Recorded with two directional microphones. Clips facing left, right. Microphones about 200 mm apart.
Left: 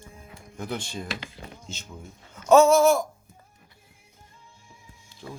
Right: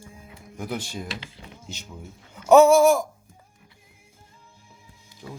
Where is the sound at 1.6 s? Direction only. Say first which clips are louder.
Right 1 dB; 10° right (ahead or behind).